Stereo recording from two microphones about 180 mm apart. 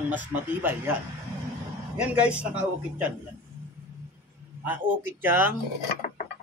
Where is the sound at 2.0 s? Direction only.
5° right (ahead or behind).